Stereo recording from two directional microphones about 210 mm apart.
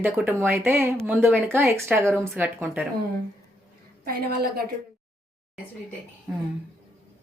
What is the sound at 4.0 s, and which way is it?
Speech, 45° right (ahead or behind).